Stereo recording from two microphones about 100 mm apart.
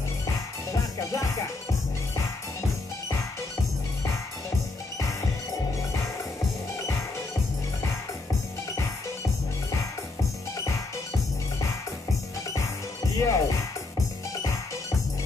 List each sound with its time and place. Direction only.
0.7 s music: 30° left (ahead or behind)
12.5 s music: 30° left (ahead or behind)